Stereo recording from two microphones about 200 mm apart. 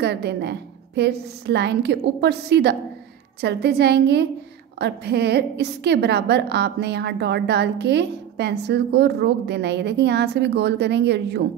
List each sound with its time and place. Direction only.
0.0 s a woman's voice: 55° right (ahead or behind)